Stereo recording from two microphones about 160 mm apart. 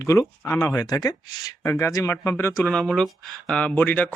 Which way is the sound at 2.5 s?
5° left (ahead or behind).